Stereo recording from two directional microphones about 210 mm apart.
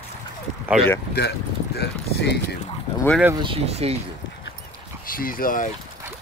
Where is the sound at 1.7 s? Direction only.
55° left (ahead or behind).